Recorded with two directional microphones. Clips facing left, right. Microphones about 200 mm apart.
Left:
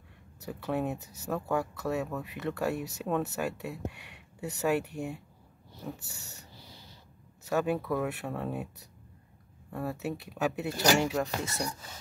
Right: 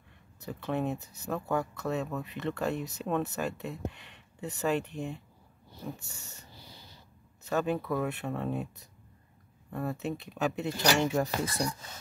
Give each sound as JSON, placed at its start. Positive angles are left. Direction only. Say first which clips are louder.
{"t": 0.5, "sound": "speech", "louder": "even", "side_deg": 10}
{"t": 7.4, "sound": "speech", "louder": "left 1 dB", "side_deg": 10}
{"t": 11.4, "sound": "speech", "louder": "right 3 dB", "side_deg": -30}